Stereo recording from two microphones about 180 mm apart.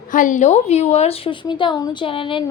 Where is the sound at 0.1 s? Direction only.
45° left (ahead or behind).